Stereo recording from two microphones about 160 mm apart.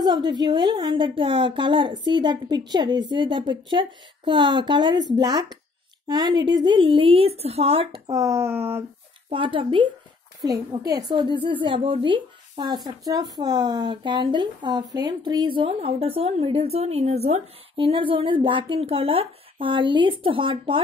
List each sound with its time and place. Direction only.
0.0 s a woman's voice: 25° right (ahead or behind)
8.1 s speech: 20° right (ahead or behind)
9.3 s a woman's voice: 35° right (ahead or behind)